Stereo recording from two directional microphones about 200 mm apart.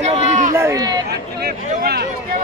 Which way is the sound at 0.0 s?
35° right (ahead or behind).